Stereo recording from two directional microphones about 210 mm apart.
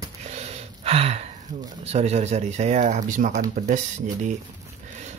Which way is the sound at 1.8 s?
30° right (ahead or behind).